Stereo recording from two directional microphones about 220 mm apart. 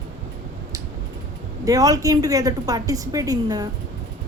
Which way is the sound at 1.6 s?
15° right (ahead or behind).